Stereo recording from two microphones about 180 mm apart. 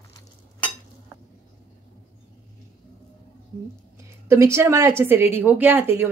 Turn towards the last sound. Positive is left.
turn(degrees=-10)  # may be behind; listen again after turning